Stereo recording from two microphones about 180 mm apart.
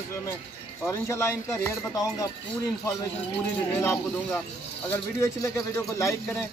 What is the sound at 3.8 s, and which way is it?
A man's voice, 15° left (ahead or behind).